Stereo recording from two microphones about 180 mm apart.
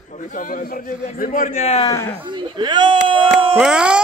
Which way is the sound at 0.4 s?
50° left (ahead or behind).